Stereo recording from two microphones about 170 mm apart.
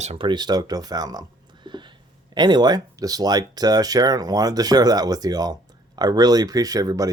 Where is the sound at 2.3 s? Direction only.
25° right (ahead or behind).